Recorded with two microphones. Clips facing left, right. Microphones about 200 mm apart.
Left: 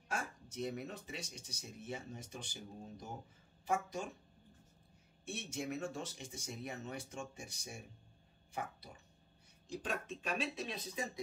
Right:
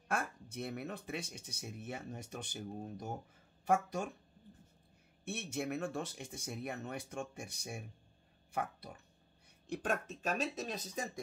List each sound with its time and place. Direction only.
0.1 s speech: 60° right (ahead or behind)
5.2 s speech: 60° right (ahead or behind); by 11.1 s 45° right (ahead or behind)